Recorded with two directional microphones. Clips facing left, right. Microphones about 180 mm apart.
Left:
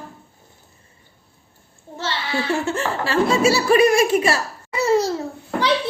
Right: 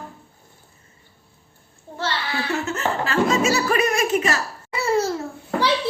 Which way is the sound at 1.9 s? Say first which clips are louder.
Left 1 dB; 25° left (ahead or behind).